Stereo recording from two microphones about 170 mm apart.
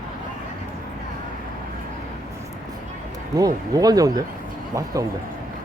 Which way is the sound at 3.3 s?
20° right (ahead or behind).